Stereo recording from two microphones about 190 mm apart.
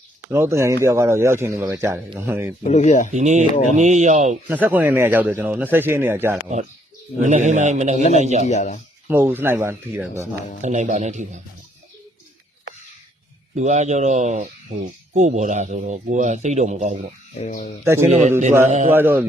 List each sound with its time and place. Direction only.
0.3 s speech: 15° right (ahead or behind)
2.6 s speech: 40° left (ahead or behind)
3.1 s speech: 40° right (ahead or behind)
4.4 s speech: 10° right (ahead or behind)
7.2 s speech: 40° right (ahead or behind)
8.4 s speech: 40° left (ahead or behind)
9.0 s speech: 10° right (ahead or behind)
10.6 s speech: 40° right (ahead or behind)
13.6 s speech: 35° right (ahead or behind)
17.4 s speech: 35° left (ahead or behind)
18.1 s speech: 35° right (ahead or behind)
18.9 s speech: 10° right (ahead or behind)